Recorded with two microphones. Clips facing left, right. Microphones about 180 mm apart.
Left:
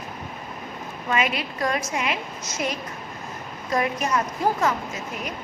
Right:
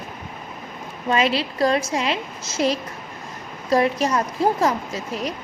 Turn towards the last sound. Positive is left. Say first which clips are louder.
# right 4 dB
turn(degrees=-35)  # may be behind; listen again after turning